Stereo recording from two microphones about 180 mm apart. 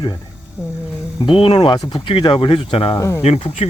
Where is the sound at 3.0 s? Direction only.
15° left (ahead or behind).